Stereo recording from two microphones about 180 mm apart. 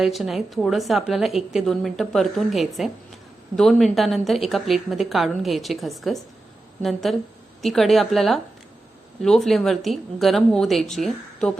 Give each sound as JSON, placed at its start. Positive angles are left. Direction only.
{"t": 0.0, "sound": "a woman's voice", "side_deg": 0}